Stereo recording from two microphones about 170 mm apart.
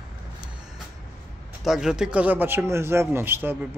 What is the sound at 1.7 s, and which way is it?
Speech, 5° right (ahead or behind).